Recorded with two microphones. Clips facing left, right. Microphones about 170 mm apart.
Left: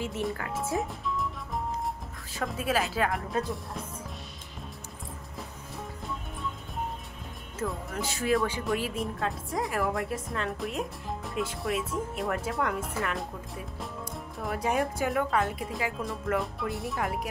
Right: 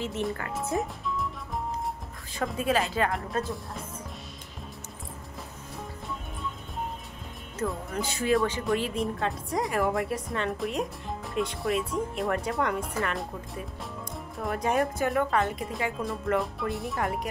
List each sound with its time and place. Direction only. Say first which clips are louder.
0.0 s a woman's voice: right 1 dB; 5° left (ahead or behind)
7.5 s a woman's voice: right 2 dB; centre (ahead or behind)